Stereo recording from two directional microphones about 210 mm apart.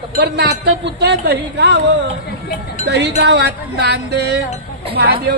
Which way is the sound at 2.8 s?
55° right (ahead or behind).